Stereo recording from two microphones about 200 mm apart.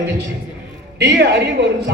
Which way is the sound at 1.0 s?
60° right (ahead or behind).